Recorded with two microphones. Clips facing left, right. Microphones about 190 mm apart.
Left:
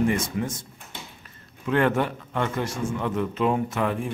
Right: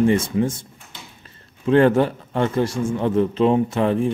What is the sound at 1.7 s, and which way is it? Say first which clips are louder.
A man's voice: right 7 dB; 30° right (ahead or behind).